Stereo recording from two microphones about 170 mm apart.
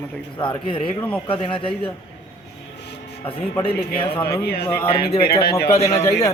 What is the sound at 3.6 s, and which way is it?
Speech, 30° left (ahead or behind).